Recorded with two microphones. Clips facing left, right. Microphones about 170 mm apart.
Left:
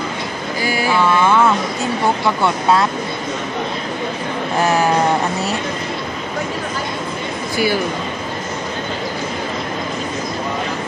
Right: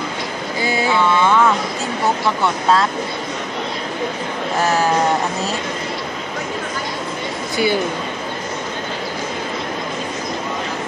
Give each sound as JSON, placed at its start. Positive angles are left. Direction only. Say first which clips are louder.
{"t": 0.6, "sound": "a sound", "louder": "even", "side_deg": -25}
{"t": 2.4, "sound": "speech", "louder": "left 1 dB", "side_deg": 10}
{"t": 7.5, "sound": "speech", "louder": "even", "side_deg": -20}